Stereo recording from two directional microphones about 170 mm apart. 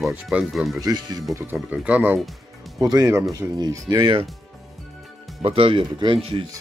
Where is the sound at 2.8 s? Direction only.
20° right (ahead or behind).